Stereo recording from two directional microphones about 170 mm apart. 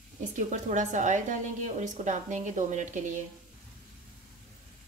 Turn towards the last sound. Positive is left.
turn(degrees=-45)  # may be behind; listen again after turning